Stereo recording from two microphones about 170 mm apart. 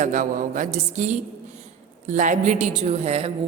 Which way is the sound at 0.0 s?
50° right (ahead or behind).